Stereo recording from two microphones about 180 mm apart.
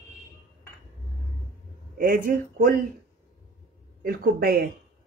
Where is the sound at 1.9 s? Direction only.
50° right (ahead or behind).